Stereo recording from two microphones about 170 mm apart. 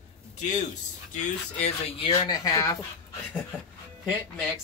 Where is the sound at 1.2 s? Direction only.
40° left (ahead or behind).